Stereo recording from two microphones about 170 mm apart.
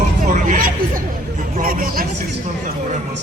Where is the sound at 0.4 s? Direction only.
55° right (ahead or behind).